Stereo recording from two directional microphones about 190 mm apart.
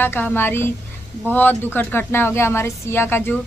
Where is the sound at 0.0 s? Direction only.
10° left (ahead or behind).